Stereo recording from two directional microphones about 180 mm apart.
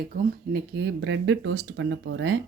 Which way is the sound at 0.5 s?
70° right (ahead or behind).